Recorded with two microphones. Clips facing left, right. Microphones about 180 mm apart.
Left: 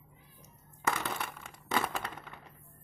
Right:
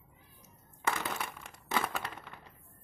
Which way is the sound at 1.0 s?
Centre (ahead or behind).